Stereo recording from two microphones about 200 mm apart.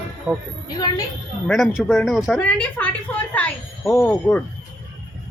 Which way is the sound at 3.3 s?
5° left (ahead or behind).